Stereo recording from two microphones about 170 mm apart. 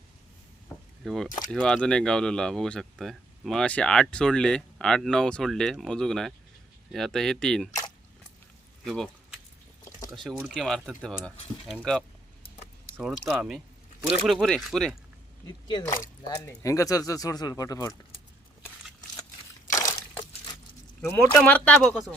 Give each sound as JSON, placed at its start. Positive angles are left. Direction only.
{"t": 1.0, "sound": "speech", "side_deg": 0}
{"t": 8.8, "sound": "a sound", "side_deg": 5}
{"t": 10.1, "sound": "speech", "side_deg": -5}
{"t": 15.4, "sound": "speech", "side_deg": 25}
{"t": 19.7, "sound": "a sound", "side_deg": 15}
{"t": 21.0, "sound": "speech", "side_deg": 15}